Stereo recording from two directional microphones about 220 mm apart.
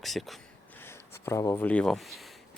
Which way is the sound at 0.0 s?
Centre (ahead or behind).